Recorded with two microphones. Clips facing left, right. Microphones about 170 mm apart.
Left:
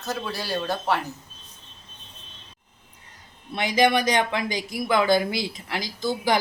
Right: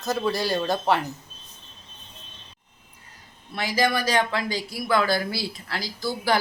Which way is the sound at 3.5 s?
20° left (ahead or behind).